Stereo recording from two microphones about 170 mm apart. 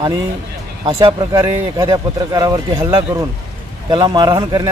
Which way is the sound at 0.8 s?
25° right (ahead or behind).